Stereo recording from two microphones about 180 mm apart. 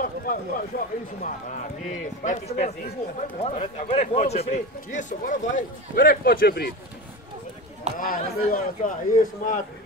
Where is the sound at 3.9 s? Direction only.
35° left (ahead or behind); by 6.7 s 55° left (ahead or behind).